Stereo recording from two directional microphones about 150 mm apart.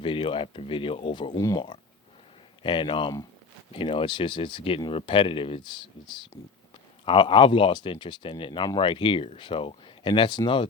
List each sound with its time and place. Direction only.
0.0 s speech: 35° left (ahead or behind)
1.4 s speech: 20° left (ahead or behind)
2.6 s speech: 35° left (ahead or behind)
7.0 s speech: 35° left (ahead or behind)